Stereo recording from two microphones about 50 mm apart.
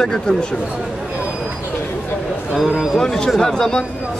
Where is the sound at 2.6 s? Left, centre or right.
Centre.